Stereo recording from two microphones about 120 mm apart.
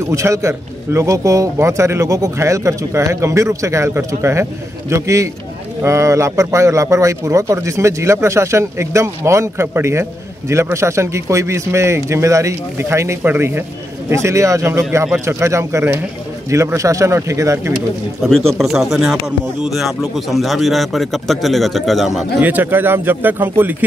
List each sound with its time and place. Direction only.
0.0 s a man's voice: 25° right (ahead or behind)
18.5 s a man's voice: centre (ahead or behind)
22.4 s a man's voice: 15° right (ahead or behind)